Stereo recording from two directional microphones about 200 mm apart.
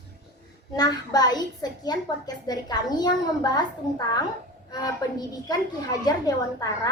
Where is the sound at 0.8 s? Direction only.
20° left (ahead or behind).